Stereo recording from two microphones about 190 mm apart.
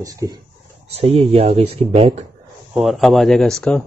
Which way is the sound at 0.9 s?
30° right (ahead or behind).